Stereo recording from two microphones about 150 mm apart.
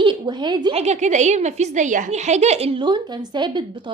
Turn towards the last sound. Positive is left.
turn(degrees=-30)  # may be behind; listen again after turning